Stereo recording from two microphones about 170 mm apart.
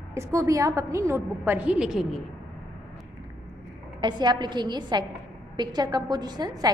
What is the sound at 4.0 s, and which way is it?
A woman's voice, 25° right (ahead or behind).